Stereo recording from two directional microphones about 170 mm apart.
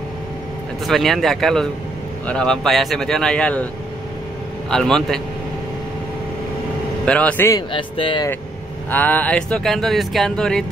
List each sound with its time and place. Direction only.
0.8 s speech: centre (ahead or behind)
4.6 s speech: 5° left (ahead or behind)
7.1 s speech: 10° left (ahead or behind)
7.7 s speech: 30° left (ahead or behind)
8.9 s speech: 10° left (ahead or behind)